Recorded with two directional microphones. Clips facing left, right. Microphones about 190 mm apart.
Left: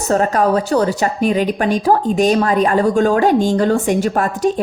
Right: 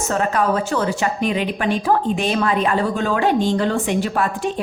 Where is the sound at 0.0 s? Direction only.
40° left (ahead or behind).